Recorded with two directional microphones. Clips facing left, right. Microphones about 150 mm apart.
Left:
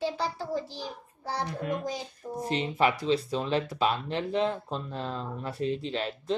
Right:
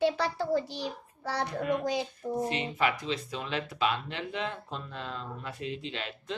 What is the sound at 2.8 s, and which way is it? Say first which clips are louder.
Speech: left 6 dB; 35° left (ahead or behind).